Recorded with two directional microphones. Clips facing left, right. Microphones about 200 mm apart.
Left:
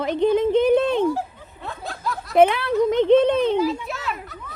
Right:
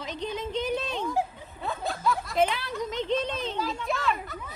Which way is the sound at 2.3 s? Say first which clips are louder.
Left 14 dB; 60° left (ahead or behind).